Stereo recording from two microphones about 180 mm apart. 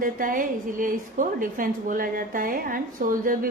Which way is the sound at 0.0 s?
50° right (ahead or behind).